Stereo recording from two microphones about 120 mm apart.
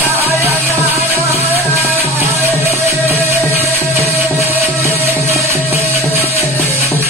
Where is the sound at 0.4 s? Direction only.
20° right (ahead or behind).